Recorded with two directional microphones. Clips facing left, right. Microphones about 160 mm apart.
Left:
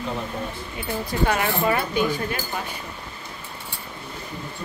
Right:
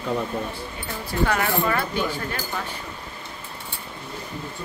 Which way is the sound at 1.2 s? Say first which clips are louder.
Even; 20° left (ahead or behind).